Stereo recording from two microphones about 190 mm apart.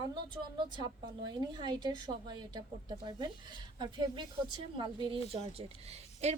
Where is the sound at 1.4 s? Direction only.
25° right (ahead or behind).